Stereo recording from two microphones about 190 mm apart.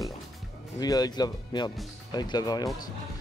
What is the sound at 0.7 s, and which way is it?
Speech, 20° left (ahead or behind).